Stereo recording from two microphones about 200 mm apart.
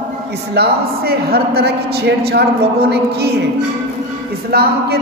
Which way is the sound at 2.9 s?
55° right (ahead or behind).